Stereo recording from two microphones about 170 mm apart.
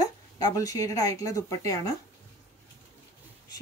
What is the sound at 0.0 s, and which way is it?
Speech, 20° left (ahead or behind).